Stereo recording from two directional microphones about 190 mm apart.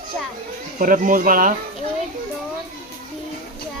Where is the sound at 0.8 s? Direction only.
45° right (ahead or behind).